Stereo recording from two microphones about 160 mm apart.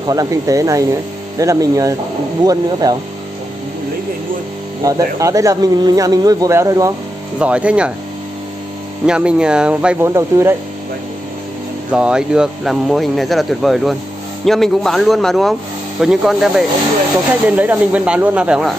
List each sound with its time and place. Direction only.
0.0 s speech: 20° right (ahead or behind)
4.8 s speech: 20° right (ahead or behind)
7.3 s speech: 5° right (ahead or behind)
9.0 s speech: 5° right (ahead or behind)
11.9 s speech: 5° right (ahead or behind)